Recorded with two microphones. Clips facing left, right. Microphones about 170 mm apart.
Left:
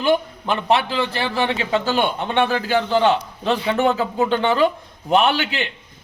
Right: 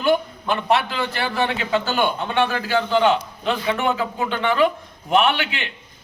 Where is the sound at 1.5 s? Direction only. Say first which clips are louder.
Left 2 dB; 30° left (ahead or behind).